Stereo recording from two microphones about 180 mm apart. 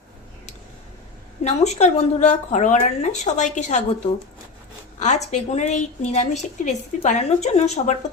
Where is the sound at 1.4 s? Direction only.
40° left (ahead or behind).